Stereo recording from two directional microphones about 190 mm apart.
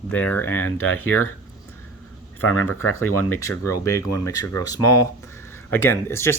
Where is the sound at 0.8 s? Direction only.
90° left.